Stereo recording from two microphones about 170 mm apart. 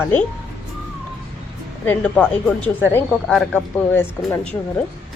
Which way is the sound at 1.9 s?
5° left (ahead or behind).